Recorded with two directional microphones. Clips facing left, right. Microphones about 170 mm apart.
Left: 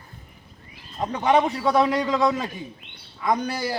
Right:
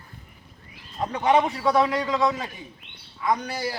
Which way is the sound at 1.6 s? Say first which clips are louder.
Left 1 dB; 20° left (ahead or behind).